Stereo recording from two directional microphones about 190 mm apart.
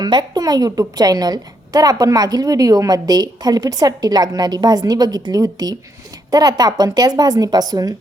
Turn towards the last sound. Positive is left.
turn(degrees=-20)  # may be behind; listen again after turning